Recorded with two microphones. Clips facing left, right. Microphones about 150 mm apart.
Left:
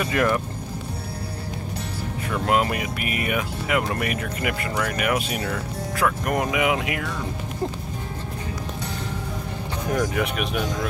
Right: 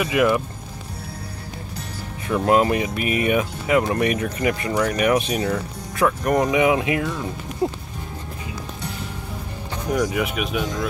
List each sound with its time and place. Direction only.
0.0 s speech: 10° right (ahead or behind)
2.2 s speech: 25° right (ahead or behind)
9.9 s speech: 5° right (ahead or behind)